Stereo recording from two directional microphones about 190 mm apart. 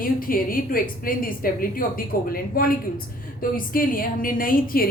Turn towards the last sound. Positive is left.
turn(degrees=50)  # may be behind; listen again after turning